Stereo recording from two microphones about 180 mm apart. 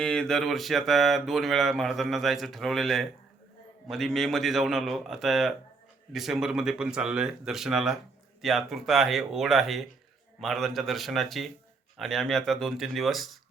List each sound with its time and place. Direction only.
0.0 s speech: 5° left (ahead or behind)